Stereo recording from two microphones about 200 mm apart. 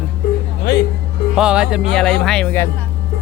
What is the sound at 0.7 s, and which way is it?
Speech, 55° left (ahead or behind).